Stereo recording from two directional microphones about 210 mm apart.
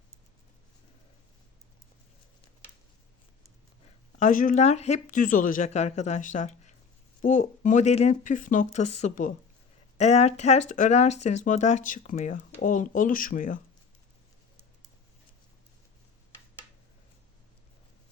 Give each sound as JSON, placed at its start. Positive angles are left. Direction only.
{"t": 4.2, "sound": "speech", "side_deg": 40}